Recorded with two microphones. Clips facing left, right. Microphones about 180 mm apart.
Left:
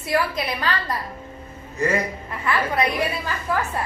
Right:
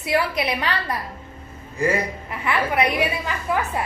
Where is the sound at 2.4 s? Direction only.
15° right (ahead or behind).